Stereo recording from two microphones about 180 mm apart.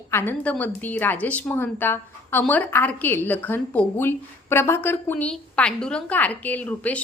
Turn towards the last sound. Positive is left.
turn(degrees=10)  # may be behind; listen again after turning